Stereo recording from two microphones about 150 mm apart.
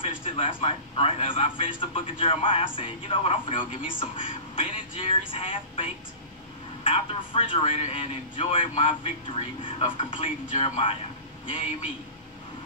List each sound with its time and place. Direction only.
0.0 s a man's voice: 35° left (ahead or behind)